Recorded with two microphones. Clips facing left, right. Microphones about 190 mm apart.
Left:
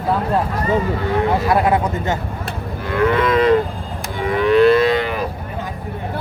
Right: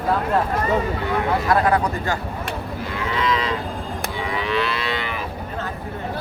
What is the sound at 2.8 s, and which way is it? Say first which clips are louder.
Moo: left 8 dB; 55° left (ahead or behind).